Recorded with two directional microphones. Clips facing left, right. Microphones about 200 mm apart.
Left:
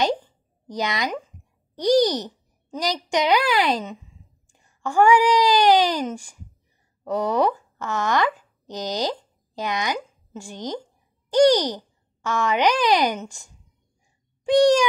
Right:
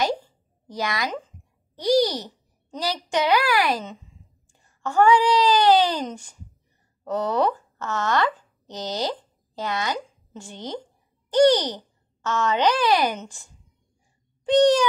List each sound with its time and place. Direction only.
0.7 s a child's voice: 20° left (ahead or behind)